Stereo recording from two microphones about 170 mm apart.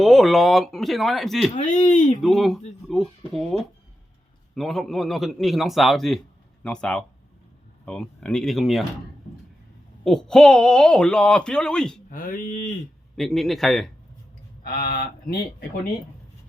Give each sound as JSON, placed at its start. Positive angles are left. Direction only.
{"t": 0.0, "sound": "a man's voice", "side_deg": 0}
{"t": 1.5, "sound": "speech", "side_deg": 50}
{"t": 2.2, "sound": "a man's voice", "side_deg": 0}
{"t": 10.0, "sound": "a man's voice", "side_deg": 0}
{"t": 12.1, "sound": "speech", "side_deg": 55}
{"t": 13.1, "sound": "a man's voice", "side_deg": 0}
{"t": 14.6, "sound": "speech", "side_deg": 60}